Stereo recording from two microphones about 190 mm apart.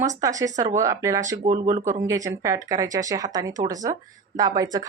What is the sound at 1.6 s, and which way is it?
Speech, 40° right (ahead or behind).